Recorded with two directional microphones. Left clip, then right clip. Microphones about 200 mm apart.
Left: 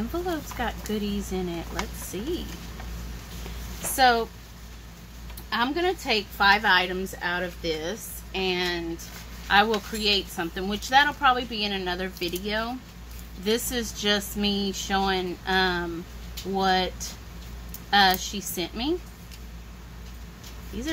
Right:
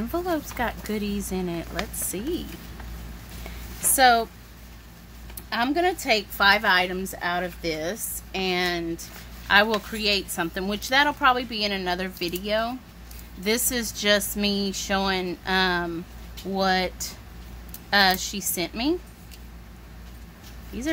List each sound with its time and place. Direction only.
0.3 s a woman's voice: 45° right (ahead or behind)
3.9 s speech: 45° right (ahead or behind)
5.5 s a woman's voice: 45° right (ahead or behind)